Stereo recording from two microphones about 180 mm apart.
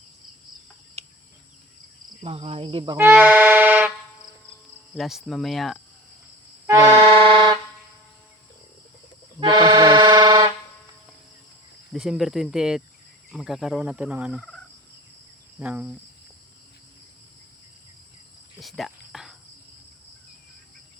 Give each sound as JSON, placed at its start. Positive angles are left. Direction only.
{"t": 1.0, "sound": "insect", "side_deg": -35}
{"t": 2.2, "sound": "speech", "side_deg": -35}
{"t": 3.0, "sound": "air horn", "side_deg": -10}
{"t": 4.9, "sound": "fowl", "side_deg": 0}
{"t": 6.7, "sound": "vehicle", "side_deg": -15}
{"t": 6.9, "sound": "accordion", "side_deg": -30}
{"t": 9.4, "sound": "music", "side_deg": -25}
{"t": 11.9, "sound": "fowl", "side_deg": 0}
{"t": 15.5, "sound": "cricket", "side_deg": -10}
{"t": 18.6, "sound": "cricket", "side_deg": 0}